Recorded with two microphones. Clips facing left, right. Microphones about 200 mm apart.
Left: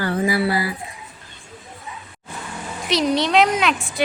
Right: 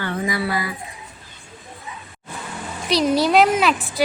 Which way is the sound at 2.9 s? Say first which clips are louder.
Right 2 dB; centre (ahead or behind).